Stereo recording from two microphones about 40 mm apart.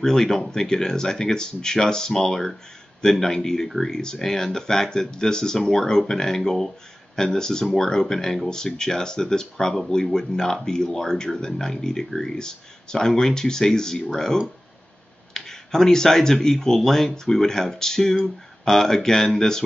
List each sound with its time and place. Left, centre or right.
0.0 s speech: centre